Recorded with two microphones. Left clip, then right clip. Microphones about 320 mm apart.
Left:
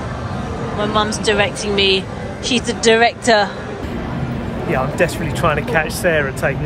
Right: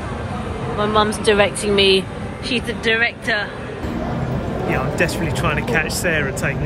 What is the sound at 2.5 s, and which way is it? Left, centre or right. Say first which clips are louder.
Speech: left 5 dB; centre.